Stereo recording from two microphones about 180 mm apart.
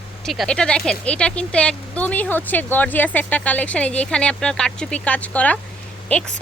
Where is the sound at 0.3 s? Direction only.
5° left (ahead or behind).